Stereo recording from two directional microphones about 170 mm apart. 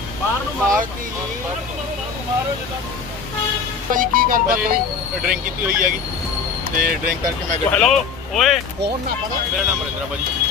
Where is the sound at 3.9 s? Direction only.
55° right (ahead or behind).